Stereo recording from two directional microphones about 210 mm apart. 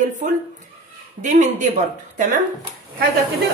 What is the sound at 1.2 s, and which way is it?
Speech, 35° right (ahead or behind).